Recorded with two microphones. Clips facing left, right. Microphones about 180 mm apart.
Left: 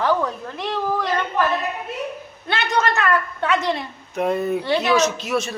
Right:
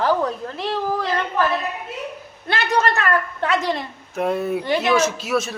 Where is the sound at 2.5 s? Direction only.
35° right (ahead or behind).